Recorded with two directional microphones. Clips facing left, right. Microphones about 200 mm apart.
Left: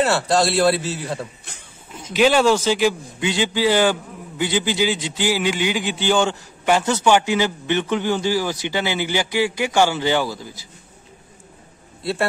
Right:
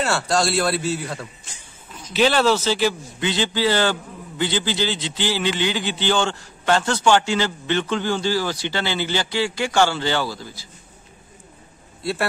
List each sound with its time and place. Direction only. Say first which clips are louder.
0.0 s a man's voice: left 3 dB; centre (ahead or behind)
1.5 s a sound: left 3 dB; 60° left (ahead or behind)
2.1 s a man's voice: left 2 dB; 10° left (ahead or behind)
12.0 s a man's voice: left 2 dB; centre (ahead or behind)